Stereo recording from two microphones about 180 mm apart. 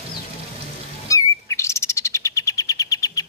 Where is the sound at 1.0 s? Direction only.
15° left (ahead or behind).